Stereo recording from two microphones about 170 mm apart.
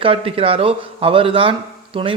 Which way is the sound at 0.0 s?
35° right (ahead or behind).